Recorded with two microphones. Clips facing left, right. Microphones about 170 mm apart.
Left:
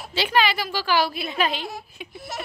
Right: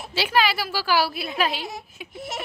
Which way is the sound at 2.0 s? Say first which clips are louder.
Left 1 dB; 5° right (ahead or behind).